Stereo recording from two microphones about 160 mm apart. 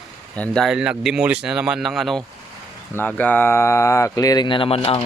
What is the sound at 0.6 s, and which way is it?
Speech, 5° right (ahead or behind).